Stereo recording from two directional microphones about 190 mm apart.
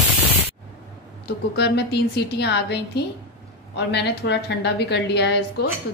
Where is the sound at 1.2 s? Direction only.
60° left (ahead or behind).